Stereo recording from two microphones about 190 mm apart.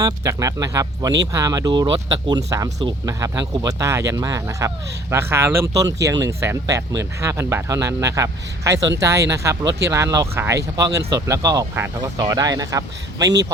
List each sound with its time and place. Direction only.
0.0 s speech: 20° right (ahead or behind)